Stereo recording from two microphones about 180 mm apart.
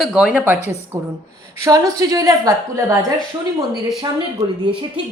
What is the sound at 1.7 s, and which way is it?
A woman's voice, 20° right (ahead or behind).